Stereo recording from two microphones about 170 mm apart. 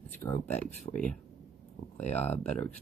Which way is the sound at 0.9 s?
40° left (ahead or behind).